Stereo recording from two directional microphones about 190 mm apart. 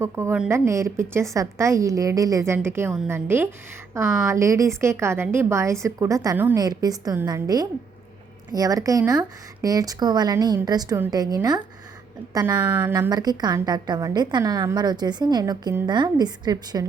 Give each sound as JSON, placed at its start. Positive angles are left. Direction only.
{"t": 0.0, "sound": "a woman's voice", "side_deg": -15}